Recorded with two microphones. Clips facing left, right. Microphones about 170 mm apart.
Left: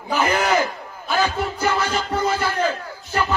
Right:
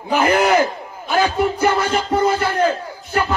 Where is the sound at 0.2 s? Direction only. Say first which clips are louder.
Right 4 dB; 55° right (ahead or behind).